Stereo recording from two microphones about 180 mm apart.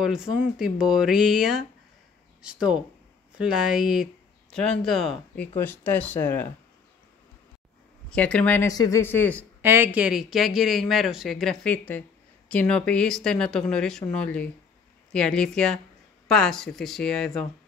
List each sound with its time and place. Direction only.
0.0 s speech: 5° right (ahead or behind)
8.1 s speech: 5° left (ahead or behind)
9.6 s speech: 10° right (ahead or behind)